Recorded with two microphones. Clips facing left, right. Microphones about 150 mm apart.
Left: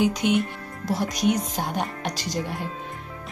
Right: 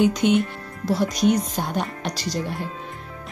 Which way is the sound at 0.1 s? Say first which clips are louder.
Right 3 dB; 5° left (ahead or behind).